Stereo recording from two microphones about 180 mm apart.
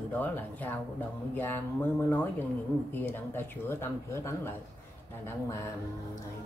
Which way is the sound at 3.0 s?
10° left (ahead or behind).